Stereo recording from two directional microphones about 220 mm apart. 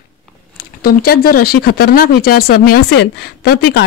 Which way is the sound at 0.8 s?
45° left (ahead or behind).